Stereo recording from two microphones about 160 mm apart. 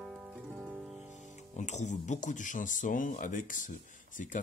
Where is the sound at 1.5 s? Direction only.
45° left (ahead or behind).